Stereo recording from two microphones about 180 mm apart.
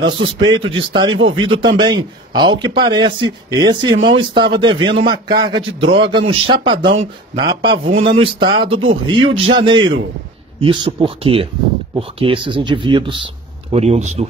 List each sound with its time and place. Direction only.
0.0 s speech: 25° right (ahead or behind)
7.7 s speech: 90° right
8.0 s speech: 30° right (ahead or behind)